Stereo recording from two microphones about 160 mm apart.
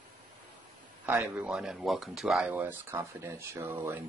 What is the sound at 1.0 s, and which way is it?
Speech, 10° right (ahead or behind).